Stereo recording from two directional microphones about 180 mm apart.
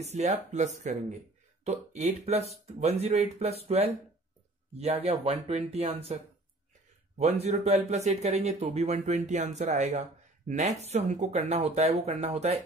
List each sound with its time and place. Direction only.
0.0 s speech: 40° right (ahead or behind)
7.2 s speech: 35° right (ahead or behind)